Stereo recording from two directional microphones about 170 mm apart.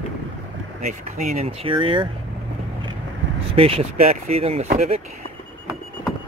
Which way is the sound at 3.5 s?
35° right (ahead or behind).